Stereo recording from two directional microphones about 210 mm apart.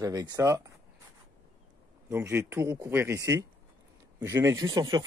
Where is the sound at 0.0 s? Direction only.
20° right (ahead or behind).